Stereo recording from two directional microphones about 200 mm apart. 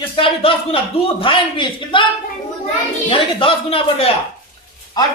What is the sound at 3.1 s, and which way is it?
A man's voice, 25° left (ahead or behind).